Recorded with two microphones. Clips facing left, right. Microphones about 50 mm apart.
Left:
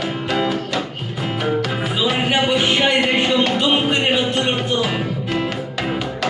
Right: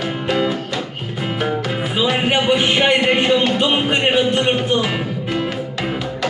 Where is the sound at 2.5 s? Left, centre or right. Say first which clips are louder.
Right 2 dB; right.